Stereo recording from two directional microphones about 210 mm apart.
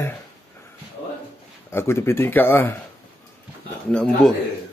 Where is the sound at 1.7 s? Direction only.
10° left (ahead or behind).